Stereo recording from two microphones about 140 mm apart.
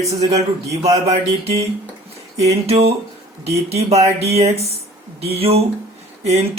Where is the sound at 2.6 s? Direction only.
45° right (ahead or behind).